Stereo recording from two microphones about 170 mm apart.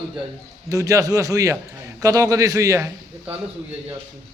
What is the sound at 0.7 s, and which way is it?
A man's voice, 20° right (ahead or behind).